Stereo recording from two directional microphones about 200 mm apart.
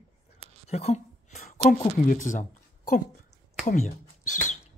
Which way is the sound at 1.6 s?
40° left (ahead or behind).